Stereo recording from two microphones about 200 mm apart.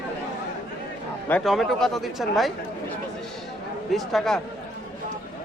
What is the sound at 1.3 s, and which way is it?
Speech, centre (ahead or behind).